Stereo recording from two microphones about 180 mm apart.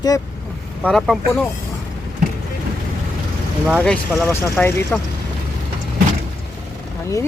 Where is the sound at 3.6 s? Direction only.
Centre (ahead or behind).